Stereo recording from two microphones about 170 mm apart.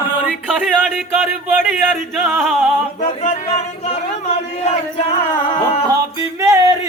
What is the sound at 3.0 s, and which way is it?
Music, 40° left (ahead or behind).